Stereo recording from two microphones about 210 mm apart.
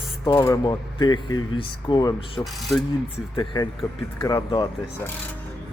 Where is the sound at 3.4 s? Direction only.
20° left (ahead or behind).